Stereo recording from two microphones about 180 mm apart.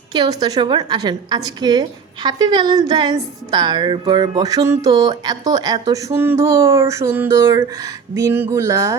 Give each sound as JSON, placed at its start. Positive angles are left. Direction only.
{"t": 0.1, "sound": "speech", "side_deg": -20}